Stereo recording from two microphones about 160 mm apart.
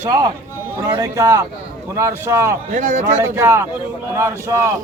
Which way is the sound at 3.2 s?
15° right (ahead or behind).